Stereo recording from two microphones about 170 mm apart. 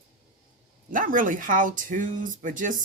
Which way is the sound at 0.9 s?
50° right (ahead or behind).